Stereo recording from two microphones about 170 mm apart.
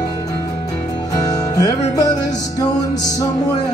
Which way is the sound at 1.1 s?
20° left (ahead or behind).